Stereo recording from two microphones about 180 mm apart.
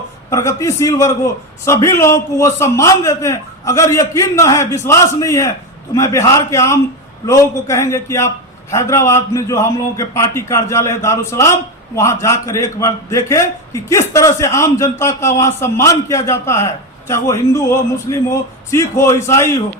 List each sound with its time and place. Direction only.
0.3 s a man's voice: 15° left (ahead or behind)